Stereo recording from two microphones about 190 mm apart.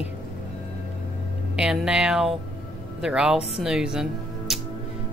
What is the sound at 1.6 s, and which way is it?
Speech, 5° right (ahead or behind).